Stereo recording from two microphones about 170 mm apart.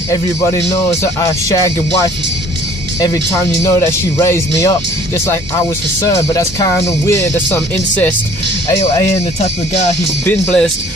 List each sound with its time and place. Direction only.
0.1 s music: 20° left (ahead or behind)
3.6 s speech: 15° left (ahead or behind)
6.0 s speech: 20° left (ahead or behind)
8.7 s speech: 35° left (ahead or behind)
10.2 s speech: 5° left (ahead or behind)